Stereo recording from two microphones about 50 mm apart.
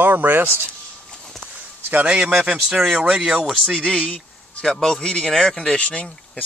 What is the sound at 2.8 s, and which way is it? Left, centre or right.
Speech, centre.